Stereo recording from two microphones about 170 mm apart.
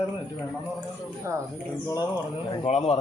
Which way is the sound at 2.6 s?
40° left (ahead or behind).